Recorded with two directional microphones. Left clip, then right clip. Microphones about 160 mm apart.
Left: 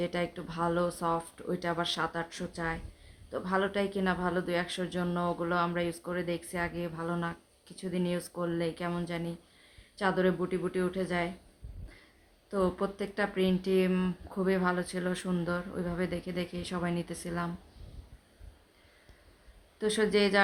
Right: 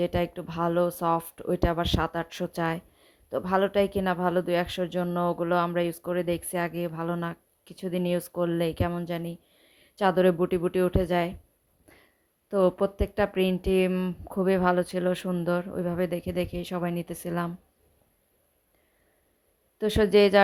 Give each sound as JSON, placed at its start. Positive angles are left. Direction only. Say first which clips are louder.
{"t": 0.0, "sound": "speech", "louder": "right 6 dB", "side_deg": -40}
{"t": 12.5, "sound": "speech", "louder": "right 7 dB", "side_deg": -35}
{"t": 19.8, "sound": "speech", "louder": "right 7 dB", "side_deg": -40}